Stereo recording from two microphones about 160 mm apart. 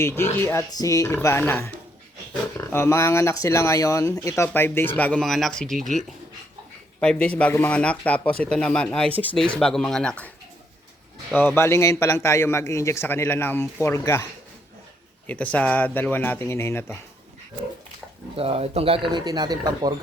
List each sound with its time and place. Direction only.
0.0 s a man's voice: 15° left (ahead or behind)
7.0 s a man's voice: 5° left (ahead or behind)
11.3 s a man's voice: 15° left (ahead or behind)
15.3 s a man's voice: 10° left (ahead or behind)
18.3 s speech: 40° right (ahead or behind)
19.1 s speech: 25° right (ahead or behind)